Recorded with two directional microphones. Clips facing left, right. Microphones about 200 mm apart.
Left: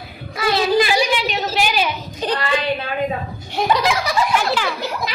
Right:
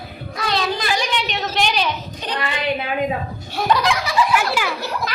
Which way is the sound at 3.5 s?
15° left (ahead or behind).